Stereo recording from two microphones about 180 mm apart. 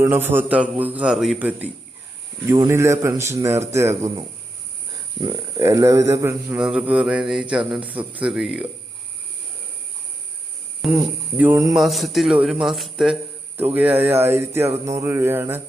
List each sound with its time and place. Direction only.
0.0 s speech: 10° right (ahead or behind)
5.2 s a man's voice: 15° right (ahead or behind)
10.9 s speech: 10° right (ahead or behind)
11.8 s a man's voice: centre (ahead or behind)
14.7 s music: 35° right (ahead or behind)
15.0 s speech: 15° right (ahead or behind)